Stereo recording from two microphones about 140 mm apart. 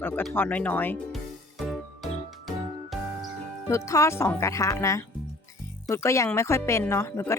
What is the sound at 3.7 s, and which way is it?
Speech, 20° left (ahead or behind).